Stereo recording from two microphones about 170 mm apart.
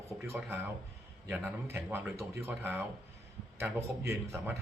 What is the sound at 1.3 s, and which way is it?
A man's voice, 10° right (ahead or behind).